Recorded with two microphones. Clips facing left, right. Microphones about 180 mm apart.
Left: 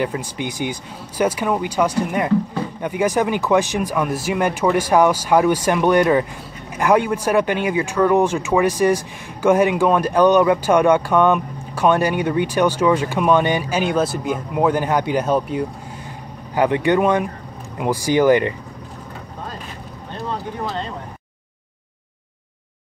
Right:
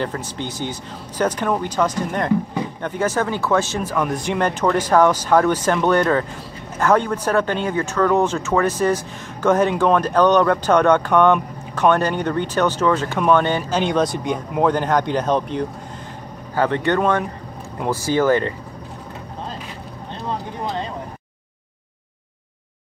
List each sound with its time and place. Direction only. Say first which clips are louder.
0.0 s speech: left 2 dB; 10° left (ahead or behind)